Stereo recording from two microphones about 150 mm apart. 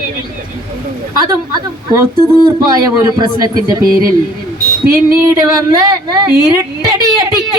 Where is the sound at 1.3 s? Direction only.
20° right (ahead or behind).